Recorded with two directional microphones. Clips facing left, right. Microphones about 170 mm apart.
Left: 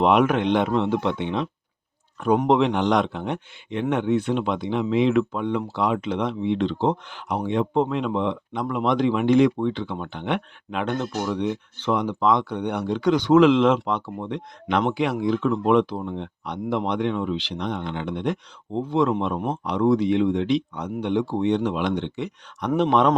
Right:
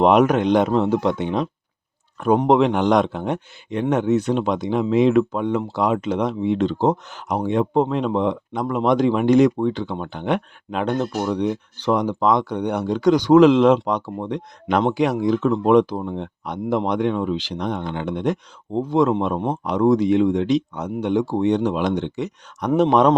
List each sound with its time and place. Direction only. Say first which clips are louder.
0.0 s speech: right 3 dB; 40° right (ahead or behind)